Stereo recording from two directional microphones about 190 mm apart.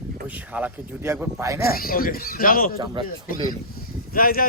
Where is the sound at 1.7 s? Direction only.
50° left (ahead or behind).